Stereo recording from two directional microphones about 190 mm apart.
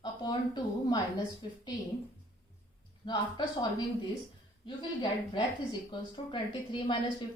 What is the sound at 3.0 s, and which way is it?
Speech, 25° left (ahead or behind).